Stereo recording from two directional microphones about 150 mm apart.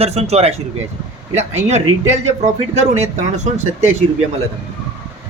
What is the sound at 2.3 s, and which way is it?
A man's voice, 50° right (ahead or behind).